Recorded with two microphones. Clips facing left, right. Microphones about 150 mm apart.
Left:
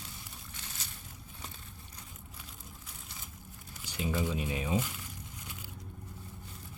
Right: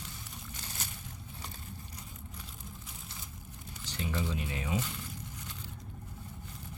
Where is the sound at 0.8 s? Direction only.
55° right (ahead or behind).